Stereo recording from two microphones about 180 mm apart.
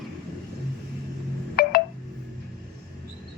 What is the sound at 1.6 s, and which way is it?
Telephone dialing, 60° left (ahead or behind).